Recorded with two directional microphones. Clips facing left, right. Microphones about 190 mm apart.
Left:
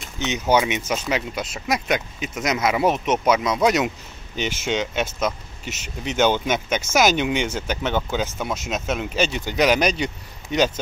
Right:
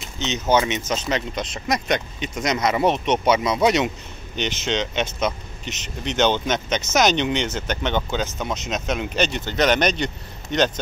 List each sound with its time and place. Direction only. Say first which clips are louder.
0.2 s speech: even; 10° left (ahead or behind)